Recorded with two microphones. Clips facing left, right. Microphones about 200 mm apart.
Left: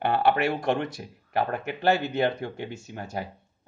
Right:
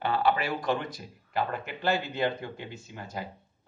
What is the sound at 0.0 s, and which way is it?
A man's voice, 65° left (ahead or behind).